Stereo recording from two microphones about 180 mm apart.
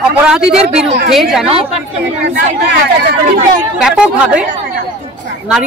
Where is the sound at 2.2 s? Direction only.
65° right (ahead or behind).